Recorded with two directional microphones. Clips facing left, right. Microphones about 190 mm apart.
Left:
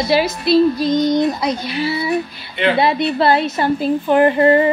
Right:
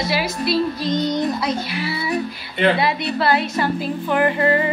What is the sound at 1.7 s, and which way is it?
A woman's voice, 25° left (ahead or behind).